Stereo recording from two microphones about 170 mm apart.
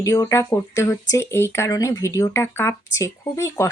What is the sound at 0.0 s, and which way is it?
Speech, 20° left (ahead or behind).